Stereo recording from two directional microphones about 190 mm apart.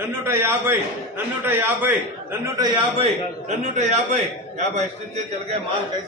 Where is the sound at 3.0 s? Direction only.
35° right (ahead or behind).